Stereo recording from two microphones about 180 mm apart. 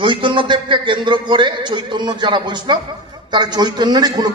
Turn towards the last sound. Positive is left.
turn(degrees=-20)  # may be behind; listen again after turning